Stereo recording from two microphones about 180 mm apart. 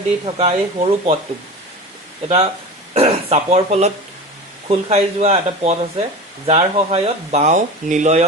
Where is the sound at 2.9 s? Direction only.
35° right (ahead or behind).